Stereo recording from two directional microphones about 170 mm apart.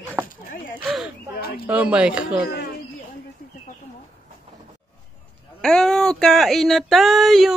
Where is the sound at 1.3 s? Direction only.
65° left (ahead or behind).